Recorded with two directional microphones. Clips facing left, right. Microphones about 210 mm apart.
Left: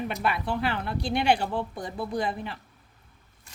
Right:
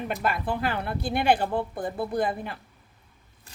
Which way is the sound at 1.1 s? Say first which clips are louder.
Right 1 dB; 50° right (ahead or behind).